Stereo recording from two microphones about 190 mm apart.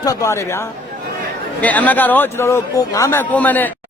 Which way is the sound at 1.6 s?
10° left (ahead or behind).